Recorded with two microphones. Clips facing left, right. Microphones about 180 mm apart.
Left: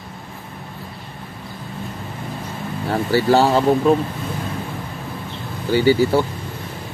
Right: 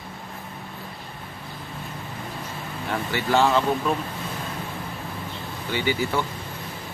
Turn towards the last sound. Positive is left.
turn(degrees=35)  # may be behind; listen again after turning